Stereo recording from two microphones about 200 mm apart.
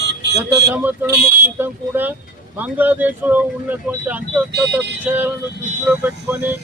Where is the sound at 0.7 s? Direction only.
10° right (ahead or behind).